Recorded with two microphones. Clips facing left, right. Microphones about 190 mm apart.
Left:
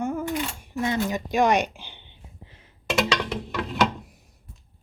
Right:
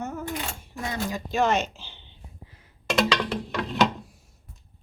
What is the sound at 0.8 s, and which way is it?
Speech, 20° left (ahead or behind).